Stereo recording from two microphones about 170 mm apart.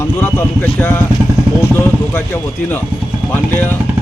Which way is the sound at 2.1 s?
10° left (ahead or behind).